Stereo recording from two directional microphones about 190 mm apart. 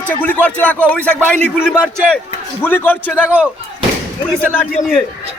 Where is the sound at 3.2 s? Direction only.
10° right (ahead or behind).